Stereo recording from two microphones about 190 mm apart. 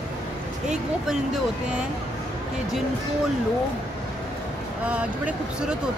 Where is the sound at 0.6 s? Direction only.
5° right (ahead or behind).